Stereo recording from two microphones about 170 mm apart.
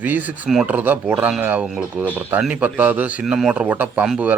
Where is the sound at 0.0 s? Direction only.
10° right (ahead or behind).